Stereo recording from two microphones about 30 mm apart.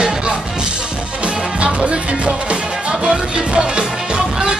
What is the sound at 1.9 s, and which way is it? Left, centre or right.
Music, right.